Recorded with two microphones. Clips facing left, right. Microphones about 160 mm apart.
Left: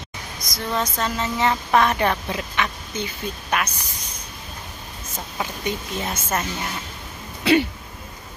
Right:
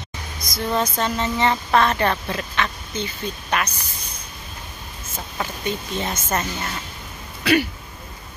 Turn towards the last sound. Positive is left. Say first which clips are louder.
# left 1 dB
turn(degrees=25)  # may be behind; listen again after turning